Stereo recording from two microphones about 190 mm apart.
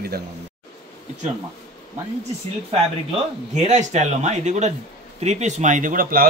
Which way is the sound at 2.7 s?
35° right (ahead or behind).